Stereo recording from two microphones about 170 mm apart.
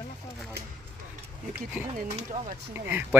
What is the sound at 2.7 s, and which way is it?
Speech, 10° right (ahead or behind).